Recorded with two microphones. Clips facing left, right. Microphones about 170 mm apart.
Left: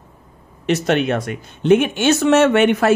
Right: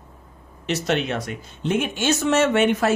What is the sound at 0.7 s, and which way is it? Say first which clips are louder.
Speech: left 6 dB; 55° left (ahead or behind).